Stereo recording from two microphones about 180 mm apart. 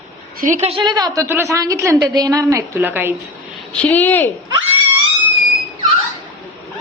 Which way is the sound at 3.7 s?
10° left (ahead or behind).